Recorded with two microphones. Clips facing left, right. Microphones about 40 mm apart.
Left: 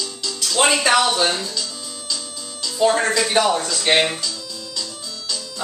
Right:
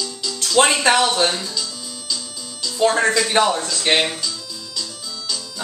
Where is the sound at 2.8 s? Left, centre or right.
Right.